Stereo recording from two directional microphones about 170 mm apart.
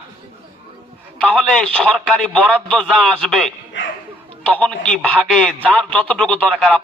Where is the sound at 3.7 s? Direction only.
90° left.